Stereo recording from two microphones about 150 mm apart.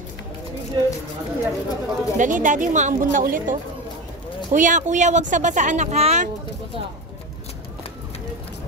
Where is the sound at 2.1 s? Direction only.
60° right (ahead or behind).